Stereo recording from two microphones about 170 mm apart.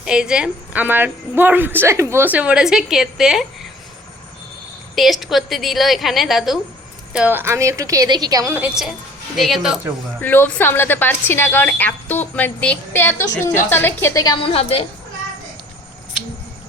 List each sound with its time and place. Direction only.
0.0 s a woman's voice: 5° right (ahead or behind)
4.9 s a woman's voice: centre (ahead or behind)
10.2 s speech: 10° left (ahead or behind)
14.3 s a woman's voice: 35° left (ahead or behind)